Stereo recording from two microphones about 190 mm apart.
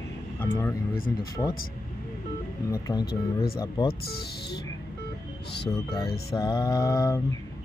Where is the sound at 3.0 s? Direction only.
50° left (ahead or behind).